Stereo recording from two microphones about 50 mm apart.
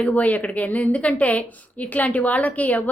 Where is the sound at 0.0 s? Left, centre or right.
Left.